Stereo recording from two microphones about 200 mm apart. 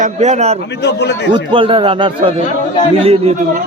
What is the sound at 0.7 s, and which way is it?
Speech, 60° left (ahead or behind).